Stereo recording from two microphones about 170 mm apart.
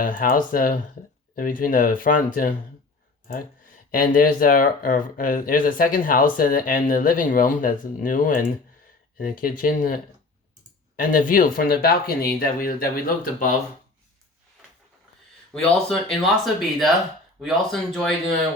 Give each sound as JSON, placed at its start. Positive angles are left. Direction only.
{"t": 0.0, "sound": "speech", "side_deg": 55}
{"t": 3.9, "sound": "speech", "side_deg": 55}
{"t": 15.9, "sound": "speech", "side_deg": 0}